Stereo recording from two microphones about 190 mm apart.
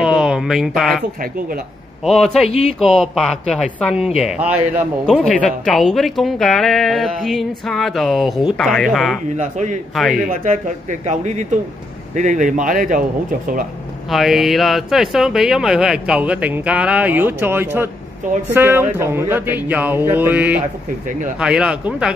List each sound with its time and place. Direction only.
0.0 s a sound: 5° right (ahead or behind)
2.0 s speech: centre (ahead or behind)
9.4 s speech: 40° right (ahead or behind)
9.9 s speech: centre (ahead or behind)
10.2 s speech: 45° right (ahead or behind)
14.1 s speech: centre (ahead or behind)